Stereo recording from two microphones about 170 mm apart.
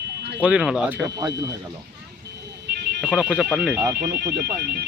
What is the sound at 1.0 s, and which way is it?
Speech, 25° right (ahead or behind).